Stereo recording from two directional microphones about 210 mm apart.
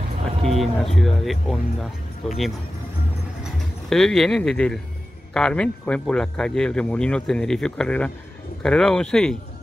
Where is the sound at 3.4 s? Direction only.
Centre (ahead or behind).